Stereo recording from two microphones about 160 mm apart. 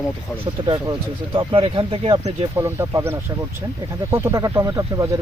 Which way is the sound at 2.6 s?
15° right (ahead or behind).